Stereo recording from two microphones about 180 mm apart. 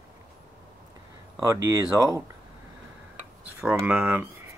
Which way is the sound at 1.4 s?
15° right (ahead or behind).